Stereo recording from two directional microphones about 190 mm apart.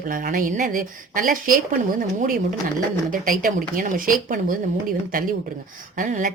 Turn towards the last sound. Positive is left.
turn(degrees=-40)  # may be behind; listen again after turning